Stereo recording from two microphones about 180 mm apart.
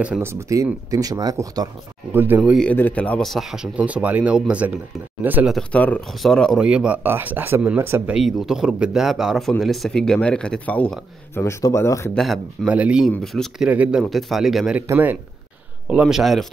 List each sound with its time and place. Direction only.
0.0 s speech: 10° right (ahead or behind)
2.5 s speech: 5° left (ahead or behind); by 5.5 s 10° right (ahead or behind)
5.5 s speech: 5° left (ahead or behind)
12.2 s speech: 5° right (ahead or behind)